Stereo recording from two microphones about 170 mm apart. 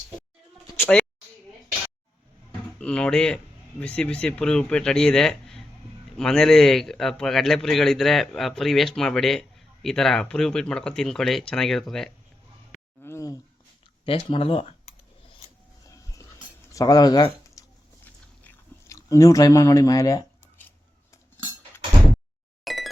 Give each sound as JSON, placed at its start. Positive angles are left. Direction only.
{"t": 2.8, "sound": "speech", "side_deg": 5}
{"t": 13.0, "sound": "a sound", "side_deg": 15}
{"t": 14.0, "sound": "speech", "side_deg": 30}
{"t": 15.9, "sound": "dog", "side_deg": 20}
{"t": 16.7, "sound": "speech", "side_deg": 20}
{"t": 18.0, "sound": "chewing", "side_deg": 15}
{"t": 22.6, "sound": "a sound", "side_deg": 0}